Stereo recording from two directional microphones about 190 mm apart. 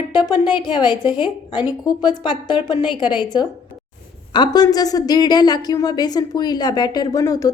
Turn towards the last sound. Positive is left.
turn(degrees=20)  # may be behind; listen again after turning